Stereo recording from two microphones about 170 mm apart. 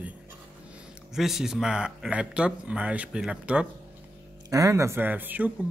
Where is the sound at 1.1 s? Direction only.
Centre (ahead or behind).